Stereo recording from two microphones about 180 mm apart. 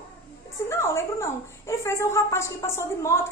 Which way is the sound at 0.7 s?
15° left (ahead or behind).